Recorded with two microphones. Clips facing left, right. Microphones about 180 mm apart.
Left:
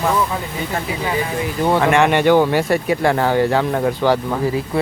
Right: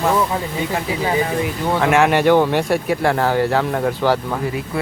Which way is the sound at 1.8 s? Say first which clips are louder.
Right 1 dB; 5° right (ahead or behind).